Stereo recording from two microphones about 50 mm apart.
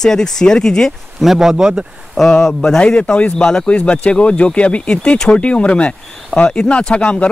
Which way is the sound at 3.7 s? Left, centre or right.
Left.